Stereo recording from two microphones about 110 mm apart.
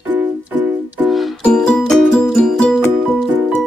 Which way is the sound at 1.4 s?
5° left (ahead or behind).